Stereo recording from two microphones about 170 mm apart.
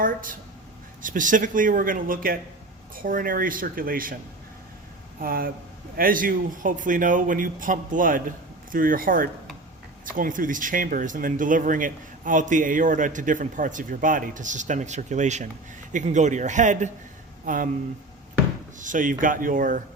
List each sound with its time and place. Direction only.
0.0 s speech: 50° right (ahead or behind)
5.2 s speech: 60° right (ahead or behind)
18.8 s a sound: 50° right (ahead or behind)
19.2 s speech: 50° right (ahead or behind)